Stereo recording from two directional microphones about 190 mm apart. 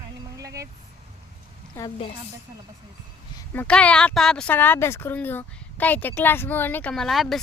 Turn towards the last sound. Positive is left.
turn(degrees=0)  # may be behind; listen again after turning